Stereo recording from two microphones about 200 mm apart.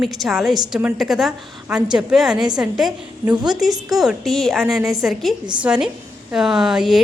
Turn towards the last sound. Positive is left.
turn(degrees=0)  # may be behind; listen again after turning